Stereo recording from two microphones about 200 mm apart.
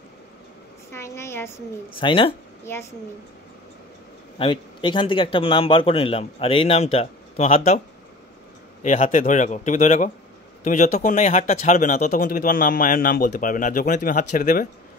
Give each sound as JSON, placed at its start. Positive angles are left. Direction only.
{"t": 0.9, "sound": "a woman's voice", "side_deg": 15}
{"t": 2.0, "sound": "speech", "side_deg": 25}
{"t": 2.6, "sound": "speech", "side_deg": 10}
{"t": 4.4, "sound": "speech", "side_deg": 25}
{"t": 8.8, "sound": "speech", "side_deg": 40}